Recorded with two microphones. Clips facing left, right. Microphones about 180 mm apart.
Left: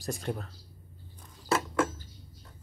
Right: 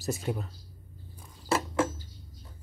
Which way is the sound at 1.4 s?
30° right (ahead or behind).